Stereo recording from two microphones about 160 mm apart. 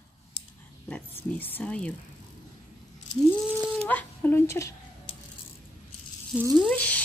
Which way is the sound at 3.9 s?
10° left (ahead or behind).